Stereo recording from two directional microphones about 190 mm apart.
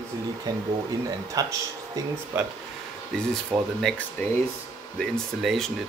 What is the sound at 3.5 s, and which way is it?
Speech, 5° right (ahead or behind).